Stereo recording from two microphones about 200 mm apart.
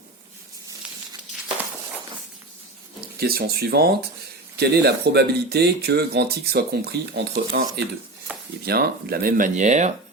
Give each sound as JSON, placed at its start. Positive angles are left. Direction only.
{"t": 3.2, "sound": "speech", "side_deg": -50}
{"t": 8.6, "sound": "speech", "side_deg": -50}